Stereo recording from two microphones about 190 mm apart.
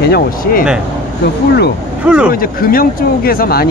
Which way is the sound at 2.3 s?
50° left (ahead or behind).